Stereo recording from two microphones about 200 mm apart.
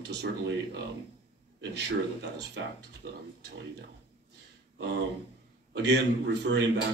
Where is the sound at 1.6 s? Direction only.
60° right (ahead or behind).